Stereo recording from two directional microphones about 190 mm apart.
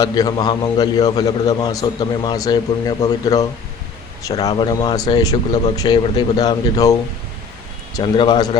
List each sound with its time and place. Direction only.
0.0 s a man's voice: 20° left (ahead or behind)
7.9 s a man's voice: 25° left (ahead or behind)